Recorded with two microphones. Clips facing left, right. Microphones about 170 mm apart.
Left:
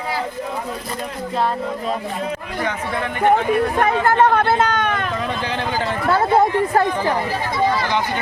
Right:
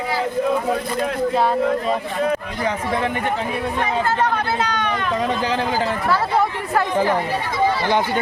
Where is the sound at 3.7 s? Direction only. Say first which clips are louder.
Left 1 dB; 55° left (ahead or behind).